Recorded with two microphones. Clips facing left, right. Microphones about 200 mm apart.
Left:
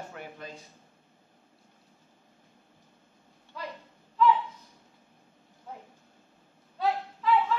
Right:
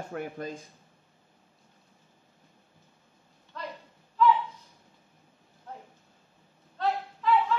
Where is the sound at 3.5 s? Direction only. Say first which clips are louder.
Even; 10° left (ahead or behind).